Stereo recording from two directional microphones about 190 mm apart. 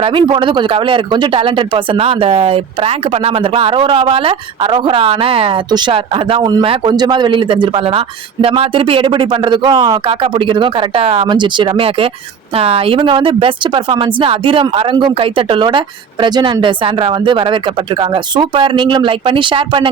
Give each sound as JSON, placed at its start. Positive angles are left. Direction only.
{"t": 0.0, "sound": "speech", "side_deg": -25}